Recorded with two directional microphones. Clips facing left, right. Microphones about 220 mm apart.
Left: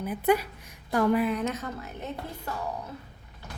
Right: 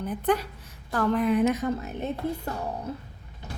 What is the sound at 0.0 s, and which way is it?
A woman's voice, 5° left (ahead or behind).